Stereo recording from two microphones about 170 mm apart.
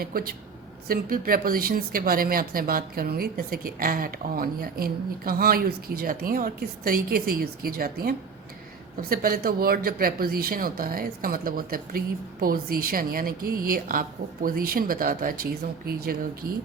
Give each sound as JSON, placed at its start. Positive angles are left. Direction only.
{"t": 0.0, "sound": "speech", "side_deg": -60}